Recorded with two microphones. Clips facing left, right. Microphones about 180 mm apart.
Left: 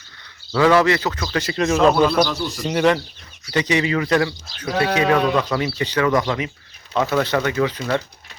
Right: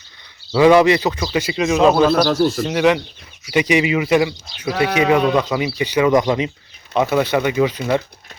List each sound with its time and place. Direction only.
0.5 s speech: 15° right (ahead or behind)
2.2 s speech: 45° right (ahead or behind)
2.6 s speech: 5° right (ahead or behind)